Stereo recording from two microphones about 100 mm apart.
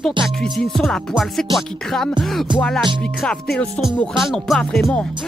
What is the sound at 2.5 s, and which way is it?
Speech, 10° left (ahead or behind).